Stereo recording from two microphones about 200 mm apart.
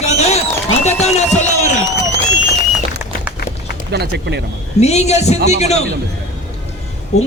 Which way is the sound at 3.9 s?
55° right (ahead or behind).